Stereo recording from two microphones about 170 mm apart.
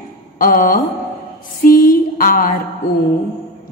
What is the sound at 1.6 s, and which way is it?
Music, 55° left (ahead or behind).